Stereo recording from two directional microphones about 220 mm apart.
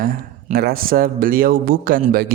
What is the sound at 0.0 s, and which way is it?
Speech, 40° right (ahead or behind).